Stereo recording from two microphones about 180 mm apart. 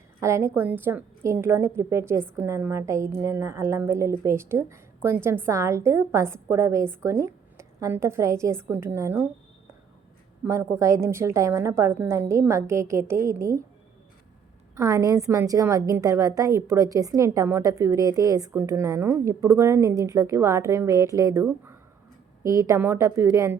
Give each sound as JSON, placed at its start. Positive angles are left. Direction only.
{"t": 0.2, "sound": "a woman's voice", "side_deg": -15}
{"t": 10.4, "sound": "a woman's voice", "side_deg": -15}
{"t": 14.8, "sound": "a woman's voice", "side_deg": -20}